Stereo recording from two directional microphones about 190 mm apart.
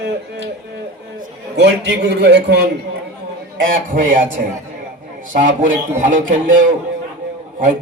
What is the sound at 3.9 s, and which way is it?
A man's voice, 45° right (ahead or behind).